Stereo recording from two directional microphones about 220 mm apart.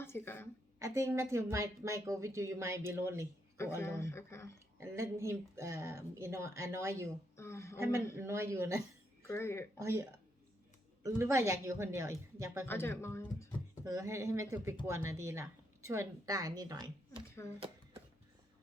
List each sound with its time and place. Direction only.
0.0 s a woman's voice: 10° left (ahead or behind)
0.8 s speech: 10° right (ahead or behind)
3.8 s speech: 10° left (ahead or behind)
4.8 s speech: 10° right (ahead or behind)
7.3 s speech: 10° left (ahead or behind)
8.1 s speech: 10° right (ahead or behind)
9.2 s speech: 10° left (ahead or behind)
9.7 s speech: 10° right (ahead or behind)
12.6 s speech: 10° left (ahead or behind)
13.8 s speech: 15° right (ahead or behind)